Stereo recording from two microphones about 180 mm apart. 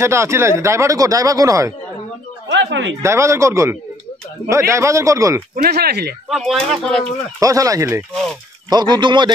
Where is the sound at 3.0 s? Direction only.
15° right (ahead or behind).